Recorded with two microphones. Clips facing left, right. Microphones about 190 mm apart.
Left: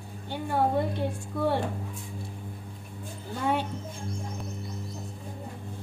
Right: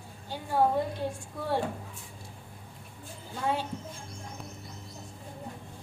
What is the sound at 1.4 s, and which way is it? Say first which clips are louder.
Speech: left 10 dB; 60° left (ahead or behind).